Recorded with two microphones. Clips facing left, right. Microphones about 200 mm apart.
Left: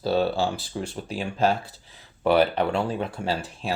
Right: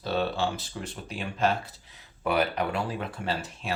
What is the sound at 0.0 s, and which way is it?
Speech, 35° left (ahead or behind).